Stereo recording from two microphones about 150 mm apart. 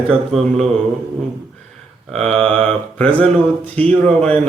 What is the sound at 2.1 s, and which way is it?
A man's voice, 5° left (ahead or behind).